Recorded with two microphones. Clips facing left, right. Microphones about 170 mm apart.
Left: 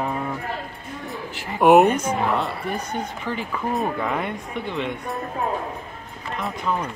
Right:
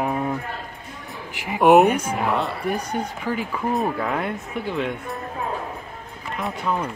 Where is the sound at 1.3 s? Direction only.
15° right (ahead or behind).